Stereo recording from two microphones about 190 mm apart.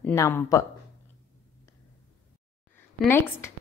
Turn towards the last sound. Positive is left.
turn(degrees=10)  # may be behind; listen again after turning